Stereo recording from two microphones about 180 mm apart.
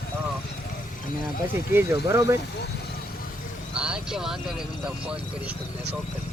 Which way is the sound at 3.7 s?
5° right (ahead or behind).